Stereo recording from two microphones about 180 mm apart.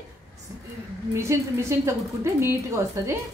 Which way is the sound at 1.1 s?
15° right (ahead or behind).